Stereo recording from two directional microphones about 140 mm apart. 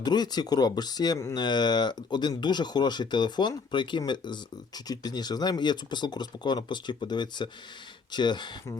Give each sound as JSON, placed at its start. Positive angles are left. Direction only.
{"t": 0.0, "sound": "speech", "side_deg": 30}